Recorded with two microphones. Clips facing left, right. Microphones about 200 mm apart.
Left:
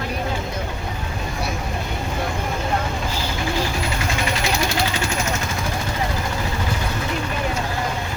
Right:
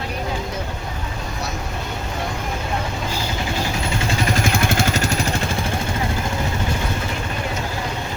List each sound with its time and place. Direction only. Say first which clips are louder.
4.4 s vehicle: right 2 dB; 50° right (ahead or behind)